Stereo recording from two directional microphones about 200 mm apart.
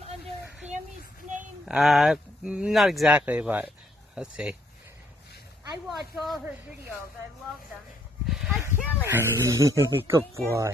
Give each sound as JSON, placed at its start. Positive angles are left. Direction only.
{"t": 0.6, "sound": "a sound", "side_deg": -35}
{"t": 1.7, "sound": "speech", "side_deg": 0}
{"t": 5.9, "sound": "speech", "side_deg": 0}
{"t": 8.5, "sound": "speech", "side_deg": -10}